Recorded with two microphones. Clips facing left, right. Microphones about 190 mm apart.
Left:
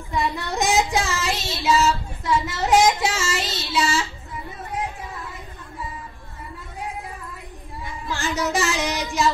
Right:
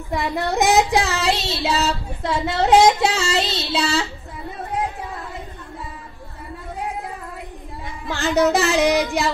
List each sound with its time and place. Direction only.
0.1 s child singing: 60° right (ahead or behind)
8.1 s child singing: 60° right (ahead or behind)